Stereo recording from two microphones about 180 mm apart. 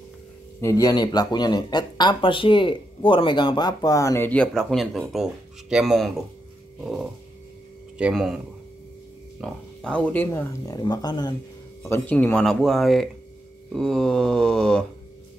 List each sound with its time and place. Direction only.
0.6 s speech: 15° left (ahead or behind); by 8.4 s centre (ahead or behind)
9.4 s speech: 5° left (ahead or behind); by 11.3 s 20° left (ahead or behind)
11.8 s speech: 10° left (ahead or behind)